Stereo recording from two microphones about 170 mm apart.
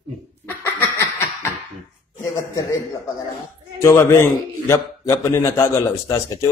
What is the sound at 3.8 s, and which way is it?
A man's voice, 15° left (ahead or behind).